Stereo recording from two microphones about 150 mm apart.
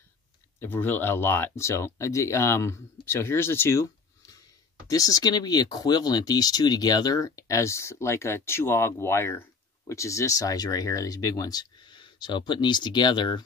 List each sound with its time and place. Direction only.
0.6 s speech: 15° left (ahead or behind); by 13.4 s 30° left (ahead or behind)